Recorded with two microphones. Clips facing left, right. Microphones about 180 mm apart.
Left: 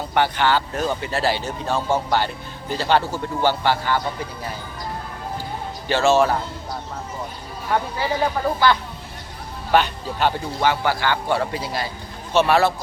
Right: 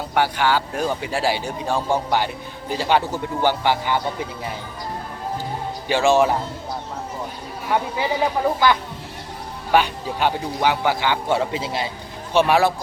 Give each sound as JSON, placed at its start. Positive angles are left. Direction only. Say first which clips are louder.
{"t": 0.1, "sound": "speech", "louder": "even", "side_deg": -10}
{"t": 5.9, "sound": "speech", "louder": "even", "side_deg": -15}
{"t": 7.7, "sound": "speech", "louder": "right 1 dB", "side_deg": -15}